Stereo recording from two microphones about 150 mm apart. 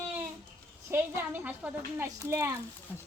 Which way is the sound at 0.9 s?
15° right (ahead or behind).